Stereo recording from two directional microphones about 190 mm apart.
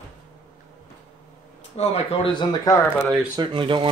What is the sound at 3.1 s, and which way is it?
Speech, 25° right (ahead or behind).